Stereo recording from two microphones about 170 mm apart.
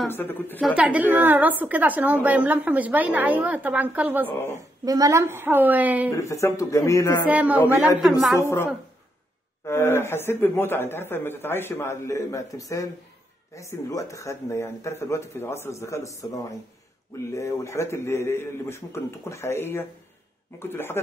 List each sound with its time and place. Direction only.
0.1 s speech: 10° left (ahead or behind)
0.7 s a woman's voice: 10° right (ahead or behind)
4.5 s a woman's voice: 20° right (ahead or behind)
6.1 s speech: 15° left (ahead or behind)
7.2 s a woman's voice: 10° right (ahead or behind)
8.4 s speech: 15° left (ahead or behind)
9.7 s speech: 15° left (ahead or behind)